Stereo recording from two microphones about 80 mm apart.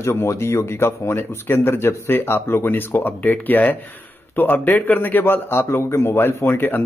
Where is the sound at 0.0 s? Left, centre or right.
Left.